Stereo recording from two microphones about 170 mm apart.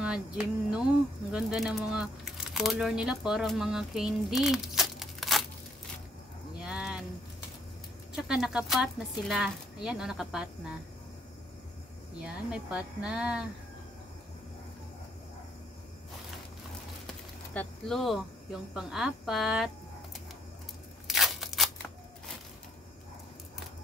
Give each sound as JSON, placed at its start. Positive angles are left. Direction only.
{"t": 0.0, "sound": "speech", "side_deg": -5}
{"t": 6.6, "sound": "a sound", "side_deg": -5}
{"t": 8.2, "sound": "speech", "side_deg": -5}
{"t": 12.2, "sound": "speech", "side_deg": -5}
{"t": 17.6, "sound": "speech", "side_deg": 0}
{"t": 21.1, "sound": "scissors", "side_deg": 0}